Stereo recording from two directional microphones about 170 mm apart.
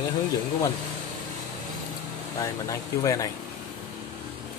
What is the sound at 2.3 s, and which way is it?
Speech, 20° left (ahead or behind).